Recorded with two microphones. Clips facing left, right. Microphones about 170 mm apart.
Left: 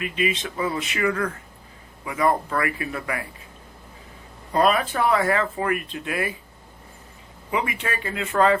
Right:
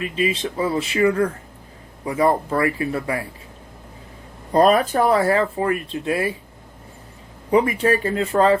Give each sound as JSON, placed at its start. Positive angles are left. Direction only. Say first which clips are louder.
{"t": 0.0, "sound": "speech", "louder": "right 3 dB", "side_deg": -35}
{"t": 4.5, "sound": "speech", "louder": "right 5 dB", "side_deg": -40}
{"t": 7.5, "sound": "speech", "louder": "right 10 dB", "side_deg": -40}